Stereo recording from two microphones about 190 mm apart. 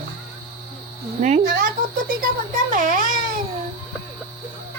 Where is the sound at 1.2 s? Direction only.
45° right (ahead or behind).